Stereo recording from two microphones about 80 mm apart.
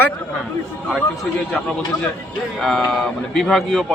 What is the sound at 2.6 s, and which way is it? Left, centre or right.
A man's voice, centre.